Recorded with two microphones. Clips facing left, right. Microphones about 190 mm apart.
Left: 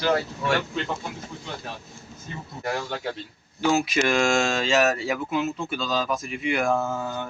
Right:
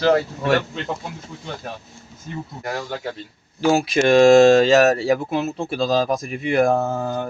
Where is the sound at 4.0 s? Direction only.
35° right (ahead or behind).